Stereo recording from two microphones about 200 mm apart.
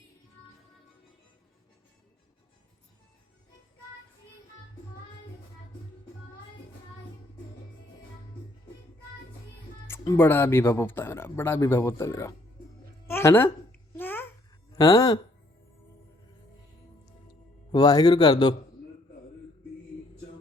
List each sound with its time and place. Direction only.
10.0 s speech: 15° left (ahead or behind)
13.1 s a sound: 10° left (ahead or behind)
13.9 s babbling: 10° left (ahead or behind)
14.8 s speech: 15° left (ahead or behind)
17.7 s a man's voice: 20° left (ahead or behind)